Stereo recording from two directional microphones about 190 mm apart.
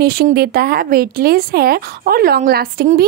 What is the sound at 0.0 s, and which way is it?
A woman's voice, 55° right (ahead or behind).